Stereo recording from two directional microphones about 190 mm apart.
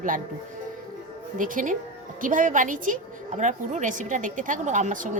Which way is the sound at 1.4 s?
45° right (ahead or behind).